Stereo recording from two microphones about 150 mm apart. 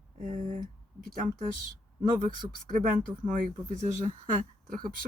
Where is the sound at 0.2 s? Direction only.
60° right (ahead or behind).